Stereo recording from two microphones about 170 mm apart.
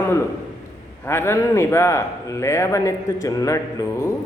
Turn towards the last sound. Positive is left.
turn(degrees=20)  # may be behind; listen again after turning